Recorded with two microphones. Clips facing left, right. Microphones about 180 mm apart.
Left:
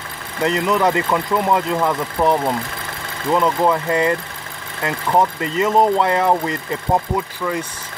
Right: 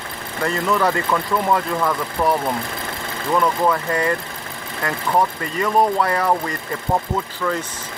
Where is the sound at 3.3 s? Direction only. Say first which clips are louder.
Left 2 dB; 20° left (ahead or behind).